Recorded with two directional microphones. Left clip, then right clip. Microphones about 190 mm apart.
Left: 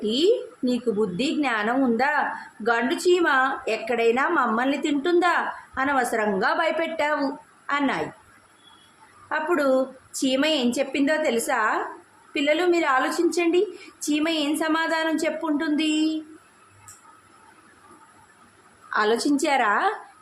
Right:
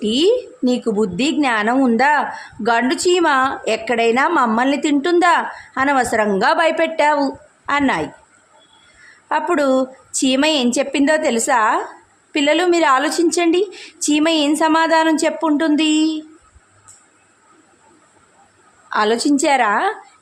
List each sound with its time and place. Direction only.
0.0 s a woman's voice: 45° right (ahead or behind)
9.3 s a woman's voice: 40° right (ahead or behind)
18.9 s a woman's voice: 35° right (ahead or behind)